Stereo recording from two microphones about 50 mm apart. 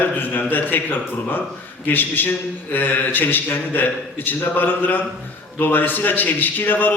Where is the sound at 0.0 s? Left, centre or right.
Left.